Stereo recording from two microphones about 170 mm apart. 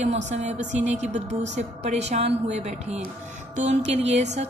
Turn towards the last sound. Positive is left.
turn(degrees=-40)  # may be behind; listen again after turning